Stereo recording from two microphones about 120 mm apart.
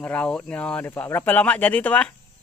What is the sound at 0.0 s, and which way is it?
Speech, 10° left (ahead or behind).